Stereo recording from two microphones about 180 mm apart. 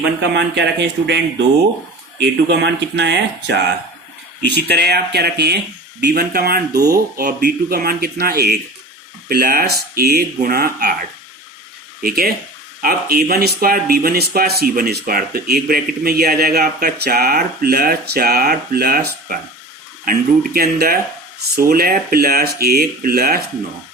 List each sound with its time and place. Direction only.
0.2 s speech: 75° right (ahead or behind)
2.5 s speech: 70° right (ahead or behind); by 10.9 s 55° right (ahead or behind)
12.0 s speech: 55° right (ahead or behind)